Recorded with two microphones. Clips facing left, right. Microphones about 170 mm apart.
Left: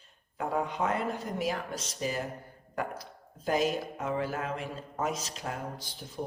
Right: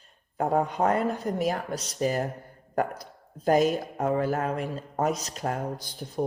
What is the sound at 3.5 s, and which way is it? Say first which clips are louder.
Speech: right 6 dB; 45° right (ahead or behind).